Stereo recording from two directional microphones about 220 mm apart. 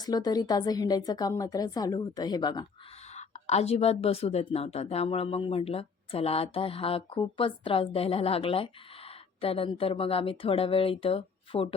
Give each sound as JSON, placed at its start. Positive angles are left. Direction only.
{"t": 0.0, "sound": "a woman's voice", "side_deg": 20}
{"t": 3.2, "sound": "speech", "side_deg": 30}